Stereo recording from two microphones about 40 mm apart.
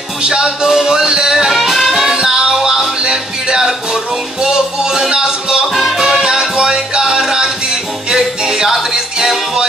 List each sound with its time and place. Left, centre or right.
0.2 s music: centre
1.5 s music: centre
5.7 s music: centre